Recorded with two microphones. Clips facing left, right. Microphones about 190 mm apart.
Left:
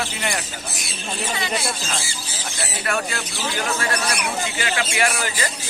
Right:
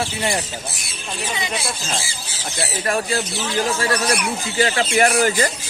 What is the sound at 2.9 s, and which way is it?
Speech, 30° right (ahead or behind).